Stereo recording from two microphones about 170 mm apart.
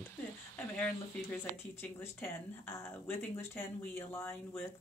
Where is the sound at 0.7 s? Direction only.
10° left (ahead or behind).